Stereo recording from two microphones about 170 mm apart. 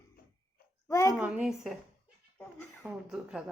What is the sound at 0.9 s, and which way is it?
Speech, 15° left (ahead or behind).